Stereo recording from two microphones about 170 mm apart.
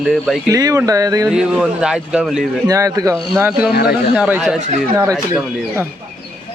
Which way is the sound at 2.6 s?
20° right (ahead or behind).